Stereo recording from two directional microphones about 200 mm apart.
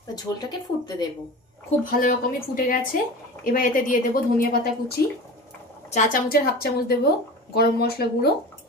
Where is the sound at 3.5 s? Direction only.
45° left (ahead or behind).